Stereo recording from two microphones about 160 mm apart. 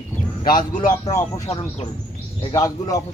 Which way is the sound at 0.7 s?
50° left (ahead or behind).